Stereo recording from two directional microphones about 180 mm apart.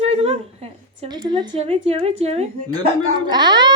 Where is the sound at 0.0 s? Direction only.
35° right (ahead or behind).